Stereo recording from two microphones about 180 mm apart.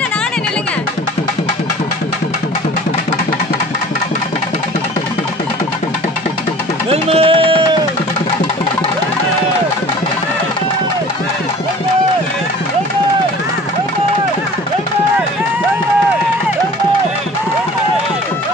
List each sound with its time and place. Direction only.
6.9 s music: 35° right (ahead or behind)